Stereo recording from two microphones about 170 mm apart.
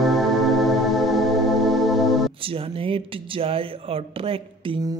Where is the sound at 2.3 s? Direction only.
35° right (ahead or behind).